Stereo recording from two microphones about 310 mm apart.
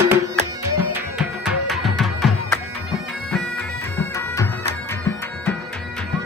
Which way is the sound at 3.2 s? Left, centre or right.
Centre.